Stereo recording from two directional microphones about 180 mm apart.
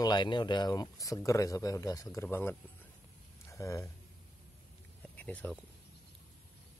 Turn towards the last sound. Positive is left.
turn(degrees=10)  # may be behind; listen again after turning